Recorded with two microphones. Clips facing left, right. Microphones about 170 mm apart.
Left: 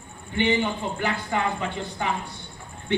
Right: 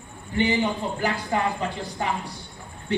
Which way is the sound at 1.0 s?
35° right (ahead or behind).